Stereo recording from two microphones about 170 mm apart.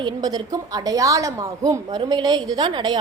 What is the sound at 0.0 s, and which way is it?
A woman's voice, 25° right (ahead or behind).